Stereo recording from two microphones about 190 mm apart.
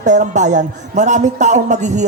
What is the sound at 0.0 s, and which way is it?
A man's voice, 40° right (ahead or behind).